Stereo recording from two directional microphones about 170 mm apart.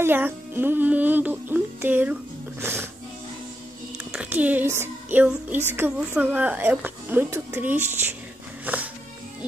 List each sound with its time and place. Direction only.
0.0 s speech: 10° right (ahead or behind)
4.1 s speech: 10° right (ahead or behind)